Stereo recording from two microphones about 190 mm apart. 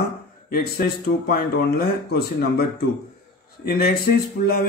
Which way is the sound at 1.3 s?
55° left (ahead or behind).